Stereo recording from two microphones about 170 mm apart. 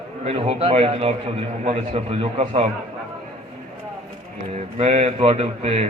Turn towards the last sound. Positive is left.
turn(degrees=-35)  # may be behind; listen again after turning